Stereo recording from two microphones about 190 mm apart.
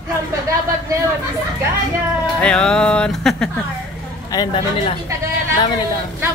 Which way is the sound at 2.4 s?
5° left (ahead or behind).